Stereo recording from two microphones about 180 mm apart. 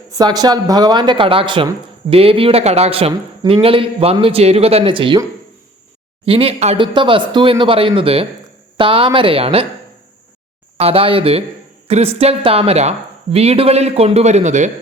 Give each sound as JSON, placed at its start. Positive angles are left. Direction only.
{"t": 0.1, "sound": "speech", "side_deg": -20}
{"t": 6.2, "sound": "speech", "side_deg": -30}
{"t": 10.8, "sound": "speech", "side_deg": -30}